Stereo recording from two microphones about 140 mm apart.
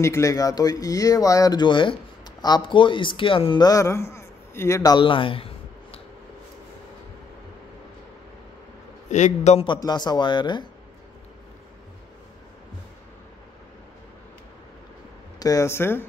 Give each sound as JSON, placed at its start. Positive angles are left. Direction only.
{"t": 0.0, "sound": "speech", "side_deg": 20}
{"t": 9.1, "sound": "a man's voice", "side_deg": 55}
{"t": 9.7, "sound": "speech", "side_deg": 30}
{"t": 15.3, "sound": "speech", "side_deg": 25}